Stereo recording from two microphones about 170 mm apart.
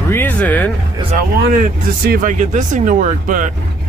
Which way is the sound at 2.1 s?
50° right (ahead or behind).